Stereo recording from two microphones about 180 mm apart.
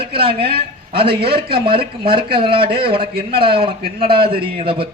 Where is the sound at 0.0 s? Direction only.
30° right (ahead or behind).